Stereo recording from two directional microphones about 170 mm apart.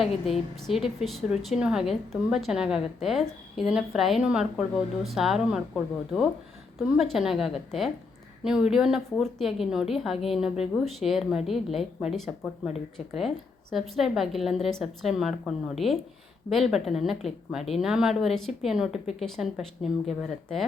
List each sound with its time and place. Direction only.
0.7 s speech: centre (ahead or behind)